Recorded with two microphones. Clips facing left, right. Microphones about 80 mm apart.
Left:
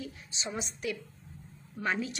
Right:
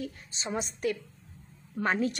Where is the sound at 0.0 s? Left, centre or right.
Right.